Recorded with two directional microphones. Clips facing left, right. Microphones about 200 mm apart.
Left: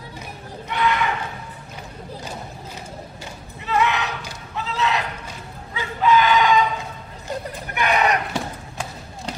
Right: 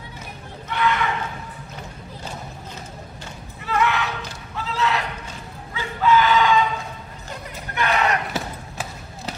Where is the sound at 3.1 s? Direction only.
20° left (ahead or behind).